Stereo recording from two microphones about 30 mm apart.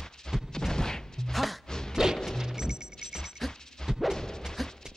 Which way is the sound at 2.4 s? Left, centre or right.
Centre.